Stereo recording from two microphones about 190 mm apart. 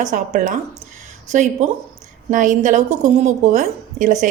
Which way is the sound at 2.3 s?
40° right (ahead or behind).